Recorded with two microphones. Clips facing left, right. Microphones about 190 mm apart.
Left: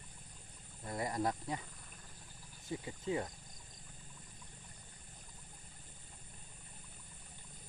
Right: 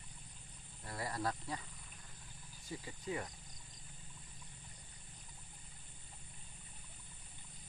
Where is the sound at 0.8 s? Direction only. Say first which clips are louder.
Left 4 dB; 20° left (ahead or behind).